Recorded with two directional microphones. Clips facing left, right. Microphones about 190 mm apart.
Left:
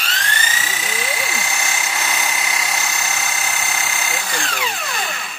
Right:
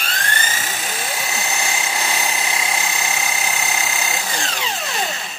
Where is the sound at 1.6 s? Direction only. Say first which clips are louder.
Right 1 dB; 30° right (ahead or behind).